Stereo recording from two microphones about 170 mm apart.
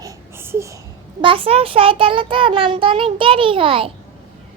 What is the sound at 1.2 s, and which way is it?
A child's voice, 30° right (ahead or behind).